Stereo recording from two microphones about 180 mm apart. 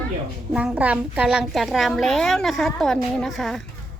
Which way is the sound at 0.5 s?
5° right (ahead or behind).